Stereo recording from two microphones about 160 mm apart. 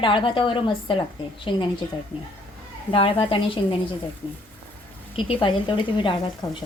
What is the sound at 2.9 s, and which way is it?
Speech, 35° left (ahead or behind).